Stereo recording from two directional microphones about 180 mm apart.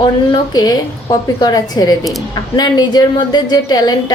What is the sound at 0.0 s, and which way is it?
A woman's voice, 25° left (ahead or behind).